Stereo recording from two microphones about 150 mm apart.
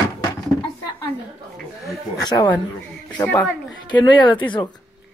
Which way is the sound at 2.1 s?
25° left (ahead or behind).